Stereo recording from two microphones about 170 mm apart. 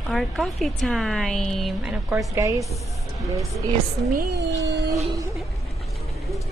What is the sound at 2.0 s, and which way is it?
Speech, 15° right (ahead or behind).